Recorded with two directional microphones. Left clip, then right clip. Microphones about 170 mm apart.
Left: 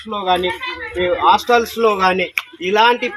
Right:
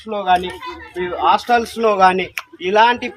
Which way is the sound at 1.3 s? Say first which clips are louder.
Left 1 dB; 50° right (ahead or behind).